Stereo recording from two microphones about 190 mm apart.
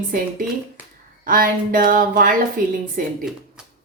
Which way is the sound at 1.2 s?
45° right (ahead or behind).